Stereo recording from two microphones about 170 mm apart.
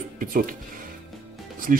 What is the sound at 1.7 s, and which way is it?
Speech, 55° right (ahead or behind).